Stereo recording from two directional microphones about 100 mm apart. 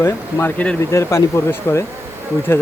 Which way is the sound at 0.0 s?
25° left (ahead or behind).